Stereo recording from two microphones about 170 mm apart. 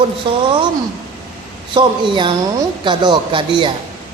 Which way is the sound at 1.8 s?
30° right (ahead or behind).